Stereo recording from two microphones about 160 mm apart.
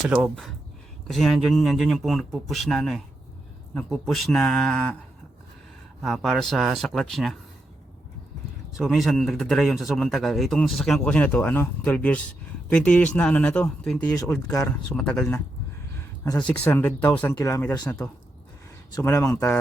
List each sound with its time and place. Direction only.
0.0 s a man's voice: centre (ahead or behind)
6.0 s a man's voice: centre (ahead or behind)
8.8 s a man's voice: centre (ahead or behind)
16.4 s speech: 10° left (ahead or behind)